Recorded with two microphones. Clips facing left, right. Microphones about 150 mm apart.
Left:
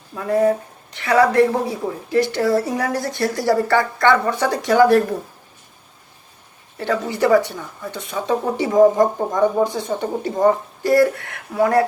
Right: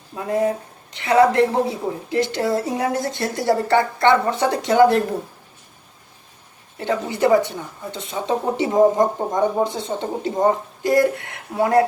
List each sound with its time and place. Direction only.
0.2 s speech: 20° right (ahead or behind)
6.7 s speech: 20° right (ahead or behind)